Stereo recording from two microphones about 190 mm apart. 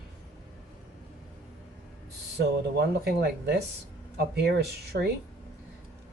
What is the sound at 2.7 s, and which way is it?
Speech, 60° right (ahead or behind).